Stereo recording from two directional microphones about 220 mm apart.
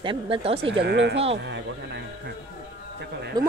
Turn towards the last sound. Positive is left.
turn(degrees=-20)  # may be behind; listen again after turning